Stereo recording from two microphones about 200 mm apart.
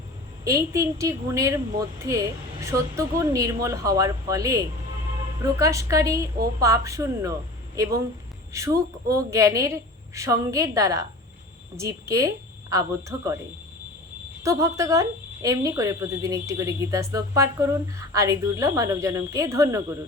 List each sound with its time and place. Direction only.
0.4 s speech: 15° right (ahead or behind)
14.4 s speech: 15° right (ahead or behind)